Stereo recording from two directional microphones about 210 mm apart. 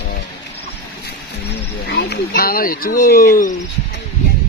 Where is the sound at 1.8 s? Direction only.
50° left (ahead or behind).